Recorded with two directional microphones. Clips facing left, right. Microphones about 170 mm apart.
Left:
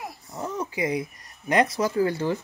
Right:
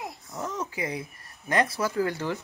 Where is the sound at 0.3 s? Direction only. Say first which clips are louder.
Left 3 dB; 10° left (ahead or behind).